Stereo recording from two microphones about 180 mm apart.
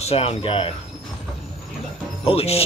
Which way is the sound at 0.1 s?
30° left (ahead or behind).